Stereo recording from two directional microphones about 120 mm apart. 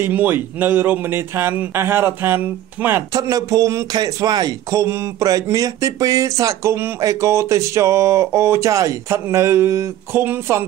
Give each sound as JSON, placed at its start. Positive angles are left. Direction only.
{"t": 0.0, "sound": "speech", "side_deg": -15}
{"t": 3.2, "sound": "speech", "side_deg": -30}